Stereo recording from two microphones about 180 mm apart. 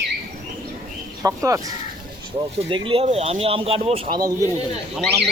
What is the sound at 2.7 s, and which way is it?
Speech, 30° right (ahead or behind).